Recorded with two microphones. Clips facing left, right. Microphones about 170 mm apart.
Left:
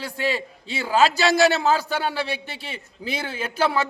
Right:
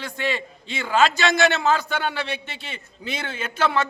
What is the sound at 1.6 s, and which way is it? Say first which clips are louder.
Speech: left 1 dB; 5° left (ahead or behind).